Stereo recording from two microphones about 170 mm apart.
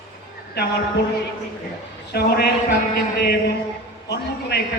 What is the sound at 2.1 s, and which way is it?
Speech, 65° left (ahead or behind).